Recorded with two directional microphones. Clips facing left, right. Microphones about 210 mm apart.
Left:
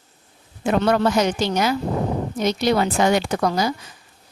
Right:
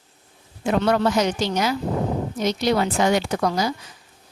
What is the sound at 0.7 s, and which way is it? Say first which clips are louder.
Speech: left 1 dB; 55° left (ahead or behind).